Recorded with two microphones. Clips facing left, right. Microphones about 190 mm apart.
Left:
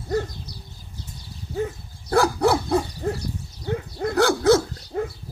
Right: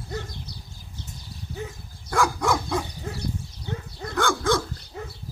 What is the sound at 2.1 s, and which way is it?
Dog, 35° left (ahead or behind).